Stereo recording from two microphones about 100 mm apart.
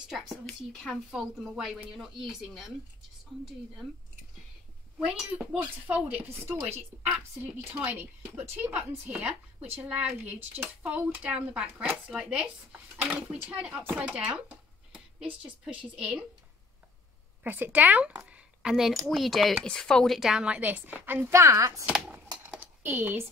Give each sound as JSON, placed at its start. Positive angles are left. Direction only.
{"t": 0.1, "sound": "speech", "side_deg": -5}
{"t": 0.5, "sound": "speech", "side_deg": 10}
{"t": 1.1, "sound": "speech", "side_deg": -5}
{"t": 4.9, "sound": "speech", "side_deg": -10}
{"t": 17.4, "sound": "speech", "side_deg": -20}
{"t": 22.6, "sound": "computer keyboard", "side_deg": -20}